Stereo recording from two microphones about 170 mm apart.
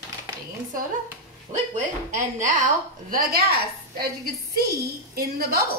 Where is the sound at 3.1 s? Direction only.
60° right (ahead or behind).